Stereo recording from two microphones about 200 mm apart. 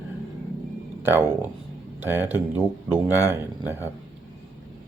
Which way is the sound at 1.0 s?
10° right (ahead or behind).